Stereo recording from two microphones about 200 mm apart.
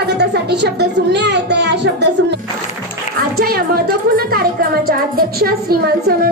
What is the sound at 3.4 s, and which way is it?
A woman's voice, 50° right (ahead or behind).